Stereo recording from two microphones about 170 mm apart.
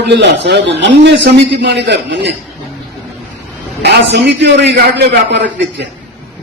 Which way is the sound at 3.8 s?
85° right.